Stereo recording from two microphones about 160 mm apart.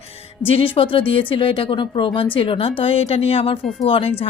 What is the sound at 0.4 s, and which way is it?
A woman's voice, 35° left (ahead or behind).